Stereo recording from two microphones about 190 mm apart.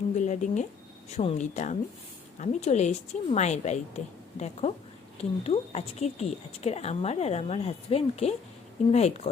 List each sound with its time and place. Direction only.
0.2 s speech: 40° left (ahead or behind)